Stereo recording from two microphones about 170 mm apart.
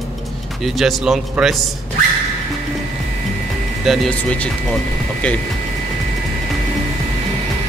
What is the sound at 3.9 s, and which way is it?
Speech, 5° left (ahead or behind).